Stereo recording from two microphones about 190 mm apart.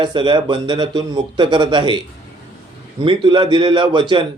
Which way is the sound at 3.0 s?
25° right (ahead or behind).